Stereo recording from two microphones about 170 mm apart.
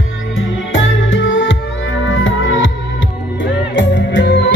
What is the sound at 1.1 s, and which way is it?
Music, 90° left.